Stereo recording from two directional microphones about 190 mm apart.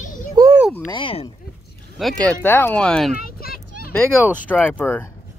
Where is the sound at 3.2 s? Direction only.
50° left (ahead or behind).